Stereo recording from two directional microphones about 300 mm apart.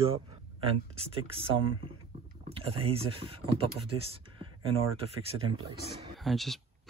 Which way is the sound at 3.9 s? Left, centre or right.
Centre.